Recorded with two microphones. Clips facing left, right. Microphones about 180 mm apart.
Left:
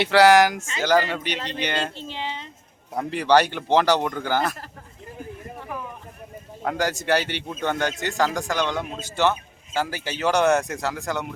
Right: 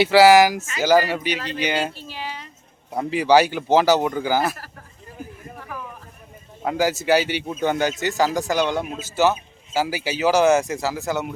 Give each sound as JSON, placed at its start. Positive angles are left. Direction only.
{"t": 0.0, "sound": "speech", "side_deg": -5}
{"t": 2.0, "sound": "speech", "side_deg": 25}
{"t": 2.9, "sound": "speech", "side_deg": -5}
{"t": 5.5, "sound": "a sound", "side_deg": 20}
{"t": 6.7, "sound": "speech", "side_deg": -5}